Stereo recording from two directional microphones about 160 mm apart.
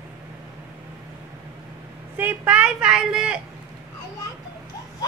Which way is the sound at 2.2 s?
10° right (ahead or behind).